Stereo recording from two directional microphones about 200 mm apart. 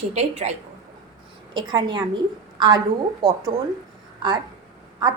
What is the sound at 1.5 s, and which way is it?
A woman's voice, 20° right (ahead or behind).